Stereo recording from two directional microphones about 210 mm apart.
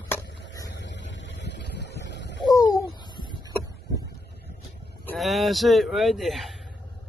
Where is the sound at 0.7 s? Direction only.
60° left (ahead or behind).